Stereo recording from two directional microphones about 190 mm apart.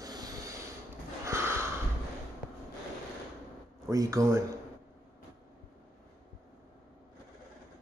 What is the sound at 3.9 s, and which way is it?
Speech, 15° right (ahead or behind).